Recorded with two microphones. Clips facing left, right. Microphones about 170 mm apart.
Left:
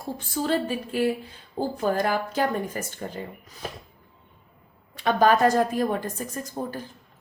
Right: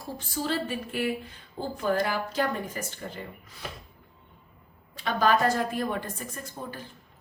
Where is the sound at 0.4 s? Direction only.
55° left (ahead or behind).